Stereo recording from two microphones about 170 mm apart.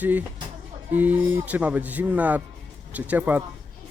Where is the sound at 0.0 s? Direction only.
10° right (ahead or behind).